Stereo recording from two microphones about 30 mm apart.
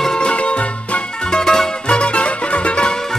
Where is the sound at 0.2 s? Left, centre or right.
Left.